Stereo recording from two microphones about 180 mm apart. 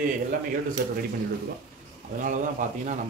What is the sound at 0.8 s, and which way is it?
Speech, 55° right (ahead or behind).